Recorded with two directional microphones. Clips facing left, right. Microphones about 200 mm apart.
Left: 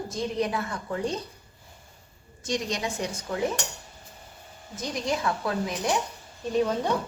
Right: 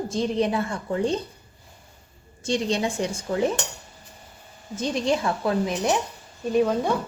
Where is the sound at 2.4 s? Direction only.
30° right (ahead or behind).